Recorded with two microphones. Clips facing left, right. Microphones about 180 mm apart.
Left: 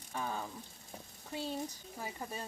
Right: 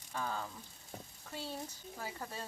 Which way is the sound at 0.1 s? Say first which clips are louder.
Left 1 dB; 15° left (ahead or behind).